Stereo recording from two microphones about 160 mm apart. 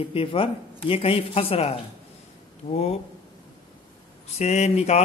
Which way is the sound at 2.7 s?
40° left (ahead or behind).